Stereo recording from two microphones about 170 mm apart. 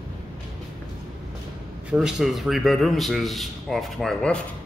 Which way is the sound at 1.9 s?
5° right (ahead or behind).